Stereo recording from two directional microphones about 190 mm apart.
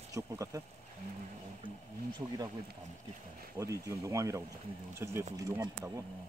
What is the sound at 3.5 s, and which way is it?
Speech, 15° right (ahead or behind).